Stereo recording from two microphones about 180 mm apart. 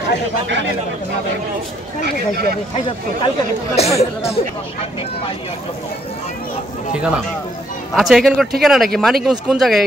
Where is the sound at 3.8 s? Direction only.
35° left (ahead or behind).